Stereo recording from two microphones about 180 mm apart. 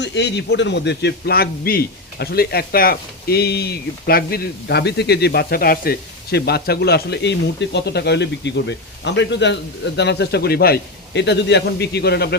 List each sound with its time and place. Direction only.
0.0 s a man's voice: 70° left (ahead or behind)